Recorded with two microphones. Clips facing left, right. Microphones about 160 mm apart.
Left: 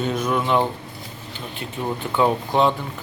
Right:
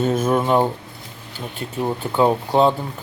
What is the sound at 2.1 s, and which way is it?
Speech, 35° right (ahead or behind).